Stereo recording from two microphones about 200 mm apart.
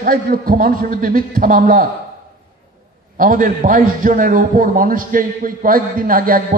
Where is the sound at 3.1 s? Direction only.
45° right (ahead or behind).